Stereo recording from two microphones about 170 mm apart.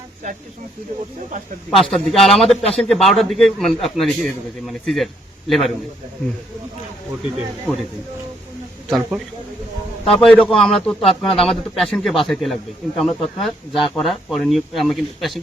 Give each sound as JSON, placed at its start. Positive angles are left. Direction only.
{"t": 1.7, "sound": "a man's voice", "side_deg": 0}
{"t": 8.9, "sound": "a man's voice", "side_deg": -5}
{"t": 10.2, "sound": "a man's voice", "side_deg": 5}